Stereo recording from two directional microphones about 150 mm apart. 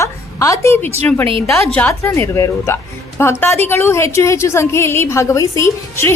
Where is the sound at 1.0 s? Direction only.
10° left (ahead or behind).